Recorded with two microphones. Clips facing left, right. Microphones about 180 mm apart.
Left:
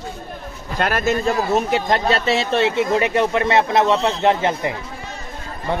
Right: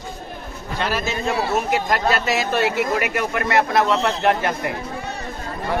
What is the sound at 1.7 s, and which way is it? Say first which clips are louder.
Speech: left 2 dB; 30° left (ahead or behind).